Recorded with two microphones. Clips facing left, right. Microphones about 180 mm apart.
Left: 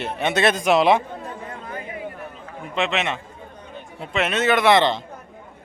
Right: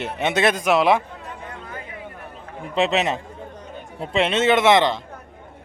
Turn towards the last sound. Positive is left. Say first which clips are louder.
# right 1 dB
turn(degrees=-20)  # may be behind; listen again after turning